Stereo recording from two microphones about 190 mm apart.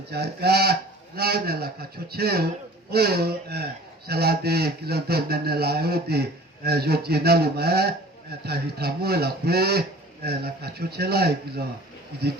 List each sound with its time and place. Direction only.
0.1 s speech: 60° right (ahead or behind)